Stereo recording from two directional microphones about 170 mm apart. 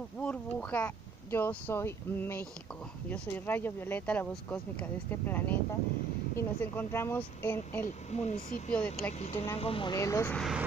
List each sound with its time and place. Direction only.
0.2 s speech: 10° left (ahead or behind)
8.1 s speech: 40° left (ahead or behind)
8.7 s speech: 5° left (ahead or behind)
9.2 s speech: 35° left (ahead or behind)
9.9 s speech: 15° left (ahead or behind)